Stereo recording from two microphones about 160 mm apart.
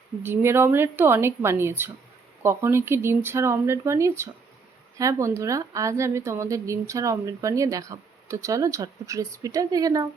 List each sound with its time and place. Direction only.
0.2 s a woman's voice: 15° right (ahead or behind)